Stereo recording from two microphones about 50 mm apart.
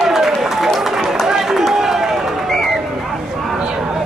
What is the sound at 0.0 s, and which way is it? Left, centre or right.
Run, centre.